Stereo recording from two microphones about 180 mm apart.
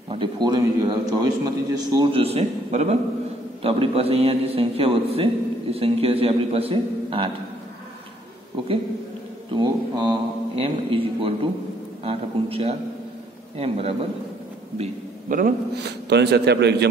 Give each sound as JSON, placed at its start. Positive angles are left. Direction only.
{"t": 0.1, "sound": "a man's voice", "side_deg": -25}
{"t": 9.5, "sound": "a man's voice", "side_deg": -25}
{"t": 14.8, "sound": "a man's voice", "side_deg": -45}